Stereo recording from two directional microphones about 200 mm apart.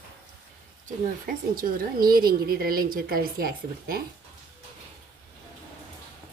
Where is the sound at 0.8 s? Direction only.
45° right (ahead or behind).